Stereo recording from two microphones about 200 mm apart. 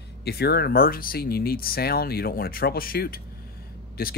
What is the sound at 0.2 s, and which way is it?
Speech, 55° left (ahead or behind).